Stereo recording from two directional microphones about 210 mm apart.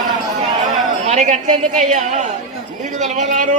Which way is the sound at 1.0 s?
35° right (ahead or behind).